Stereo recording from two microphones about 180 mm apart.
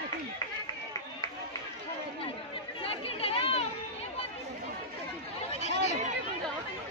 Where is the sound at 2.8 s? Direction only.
30° left (ahead or behind).